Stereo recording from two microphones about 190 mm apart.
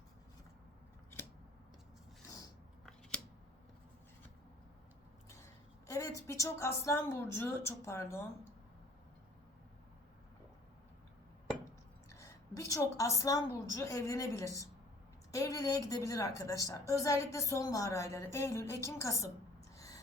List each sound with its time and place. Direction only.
5.9 s a woman's voice: 15° left (ahead or behind)
12.0 s a woman's voice: 15° left (ahead or behind)
19.7 s a sound: 15° left (ahead or behind)